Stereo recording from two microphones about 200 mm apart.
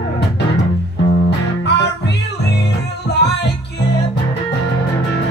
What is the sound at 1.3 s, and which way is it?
Music, 60° left (ahead or behind).